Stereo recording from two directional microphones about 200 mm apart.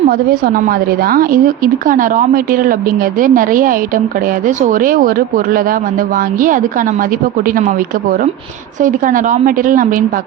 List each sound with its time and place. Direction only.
0.1 s a woman's voice: 50° right (ahead or behind)
8.8 s a woman's voice: 40° right (ahead or behind)